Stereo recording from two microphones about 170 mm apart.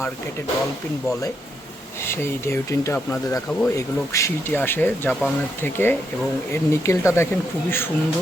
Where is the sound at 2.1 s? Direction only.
15° left (ahead or behind).